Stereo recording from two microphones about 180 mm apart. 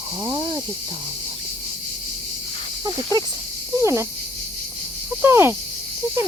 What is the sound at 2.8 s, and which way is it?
Snake, 25° right (ahead or behind).